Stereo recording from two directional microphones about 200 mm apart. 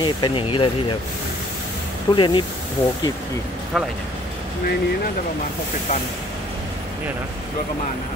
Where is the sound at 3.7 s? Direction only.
Centre (ahead or behind).